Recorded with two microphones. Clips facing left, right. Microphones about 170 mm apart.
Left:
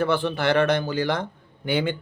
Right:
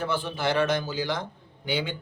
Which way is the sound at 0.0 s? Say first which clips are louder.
Left 5 dB; 65° left (ahead or behind).